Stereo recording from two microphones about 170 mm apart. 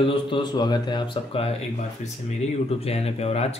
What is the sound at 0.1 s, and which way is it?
Speech, 30° left (ahead or behind).